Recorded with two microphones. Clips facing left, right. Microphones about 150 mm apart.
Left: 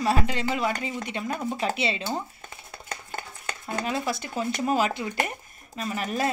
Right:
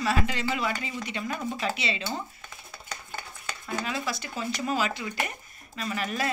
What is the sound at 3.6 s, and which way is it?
Speech, 45° left (ahead or behind).